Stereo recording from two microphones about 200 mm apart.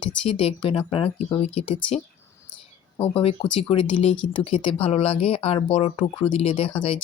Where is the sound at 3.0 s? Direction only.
30° left (ahead or behind).